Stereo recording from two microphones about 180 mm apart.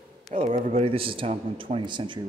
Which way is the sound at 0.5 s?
45° right (ahead or behind).